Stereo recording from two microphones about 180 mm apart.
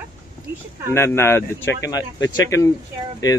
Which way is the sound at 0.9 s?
15° left (ahead or behind).